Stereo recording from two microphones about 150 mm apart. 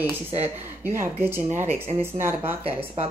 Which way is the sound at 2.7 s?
40° right (ahead or behind).